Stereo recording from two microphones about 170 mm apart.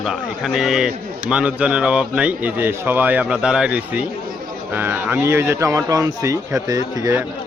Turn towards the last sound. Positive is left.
turn(degrees=-20)  # may be behind; listen again after turning